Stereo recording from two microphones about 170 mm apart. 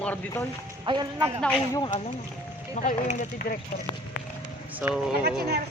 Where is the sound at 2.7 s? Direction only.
40° left (ahead or behind).